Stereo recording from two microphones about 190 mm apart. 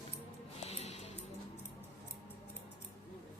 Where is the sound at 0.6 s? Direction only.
35° left (ahead or behind).